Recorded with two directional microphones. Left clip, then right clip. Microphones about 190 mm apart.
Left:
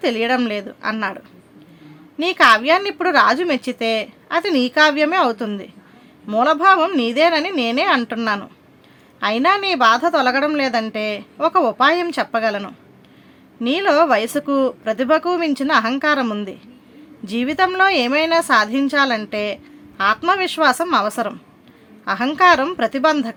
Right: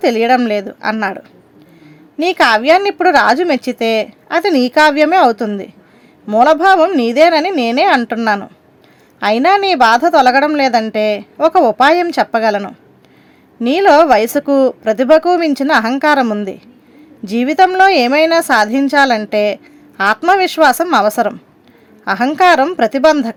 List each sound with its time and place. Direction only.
0.0 s speech: 25° right (ahead or behind)
2.2 s speech: 25° right (ahead or behind)